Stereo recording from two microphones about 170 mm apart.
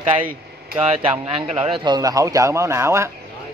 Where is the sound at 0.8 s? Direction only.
40° right (ahead or behind); by 3.1 s 15° right (ahead or behind).